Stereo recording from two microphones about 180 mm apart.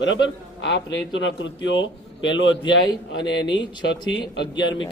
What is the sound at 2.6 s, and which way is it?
Speech, 25° left (ahead or behind).